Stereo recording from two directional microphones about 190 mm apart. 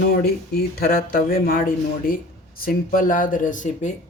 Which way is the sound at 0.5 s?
50° left (ahead or behind).